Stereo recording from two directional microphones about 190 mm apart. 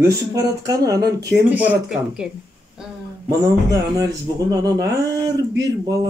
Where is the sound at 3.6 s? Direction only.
20° right (ahead or behind).